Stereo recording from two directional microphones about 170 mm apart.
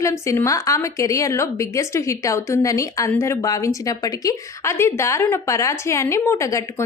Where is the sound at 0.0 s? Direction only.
15° left (ahead or behind).